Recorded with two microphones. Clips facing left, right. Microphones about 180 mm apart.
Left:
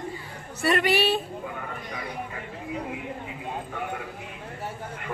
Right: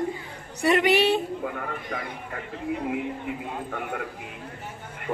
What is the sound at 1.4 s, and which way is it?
Speech, 55° right (ahead or behind).